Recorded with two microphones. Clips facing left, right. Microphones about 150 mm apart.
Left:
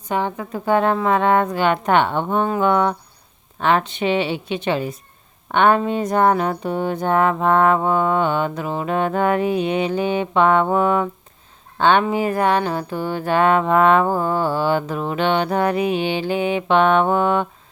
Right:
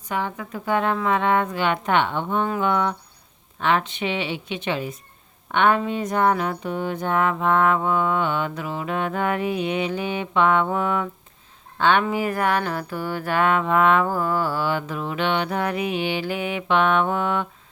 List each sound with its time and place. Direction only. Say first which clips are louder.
0.1 s speech: left 5 dB; 30° left (ahead or behind)